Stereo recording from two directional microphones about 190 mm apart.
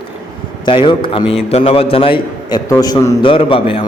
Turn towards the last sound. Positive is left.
turn(degrees=30)  # may be behind; listen again after turning